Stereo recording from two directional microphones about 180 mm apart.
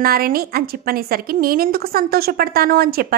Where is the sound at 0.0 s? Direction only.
55° right (ahead or behind).